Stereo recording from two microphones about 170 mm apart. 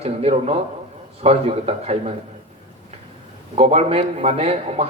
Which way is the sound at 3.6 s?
35° right (ahead or behind).